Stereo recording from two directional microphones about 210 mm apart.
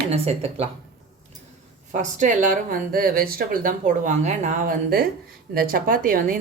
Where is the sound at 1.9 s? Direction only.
35° right (ahead or behind).